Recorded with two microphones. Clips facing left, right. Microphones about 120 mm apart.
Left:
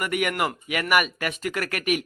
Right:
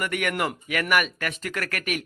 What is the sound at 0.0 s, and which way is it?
Speech, 10° left (ahead or behind).